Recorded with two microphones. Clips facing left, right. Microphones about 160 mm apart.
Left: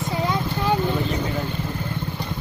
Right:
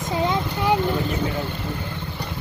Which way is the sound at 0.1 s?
20° right (ahead or behind).